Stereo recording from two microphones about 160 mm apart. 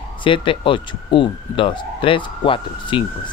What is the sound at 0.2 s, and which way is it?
Speech, 30° left (ahead or behind).